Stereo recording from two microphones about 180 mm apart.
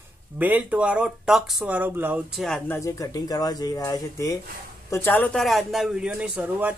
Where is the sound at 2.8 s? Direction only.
20° left (ahead or behind).